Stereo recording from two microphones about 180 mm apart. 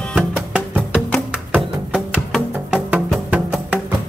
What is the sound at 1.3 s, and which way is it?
Music, 5° right (ahead or behind).